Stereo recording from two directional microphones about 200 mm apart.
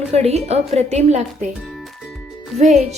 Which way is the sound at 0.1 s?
30° right (ahead or behind).